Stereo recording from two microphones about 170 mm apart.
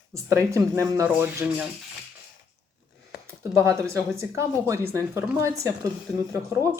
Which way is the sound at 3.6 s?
15° right (ahead or behind).